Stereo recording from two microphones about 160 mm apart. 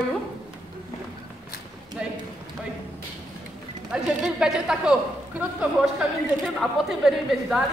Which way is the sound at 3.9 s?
5° right (ahead or behind).